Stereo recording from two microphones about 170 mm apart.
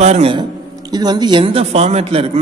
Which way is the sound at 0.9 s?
25° right (ahead or behind).